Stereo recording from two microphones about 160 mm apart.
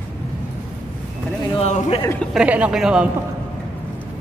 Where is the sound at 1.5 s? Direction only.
40° left (ahead or behind).